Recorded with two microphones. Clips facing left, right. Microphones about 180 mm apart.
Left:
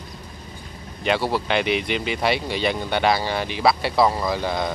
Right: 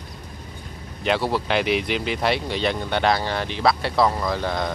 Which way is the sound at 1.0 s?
Centre (ahead or behind).